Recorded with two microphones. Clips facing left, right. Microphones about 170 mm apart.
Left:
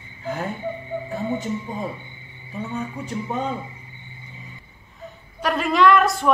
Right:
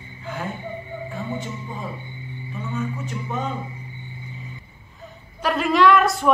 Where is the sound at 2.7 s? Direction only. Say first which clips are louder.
Right 1 dB; 35° left (ahead or behind).